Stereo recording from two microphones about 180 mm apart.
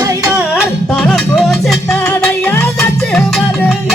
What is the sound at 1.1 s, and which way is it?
Music, centre (ahead or behind).